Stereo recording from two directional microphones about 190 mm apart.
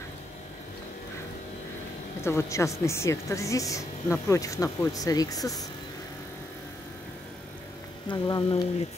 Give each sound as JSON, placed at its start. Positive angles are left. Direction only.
{"t": 2.2, "sound": "a woman's voice", "side_deg": 15}
{"t": 8.1, "sound": "speech", "side_deg": 25}